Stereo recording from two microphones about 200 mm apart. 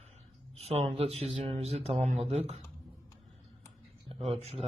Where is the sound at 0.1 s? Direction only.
30° right (ahead or behind).